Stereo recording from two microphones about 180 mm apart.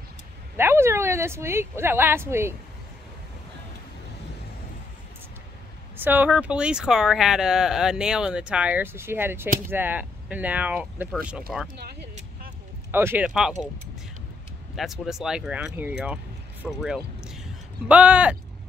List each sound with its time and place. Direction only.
0.6 s a woman's voice: 15° right (ahead or behind)
5.9 s a woman's voice: 10° right (ahead or behind)
11.7 s a sound: 65° right (ahead or behind)
12.9 s a woman's voice: 10° right (ahead or behind)
14.8 s speech: centre (ahead or behind)
16.8 s a sound: 5° right (ahead or behind)
17.8 s a woman's voice: 5° right (ahead or behind)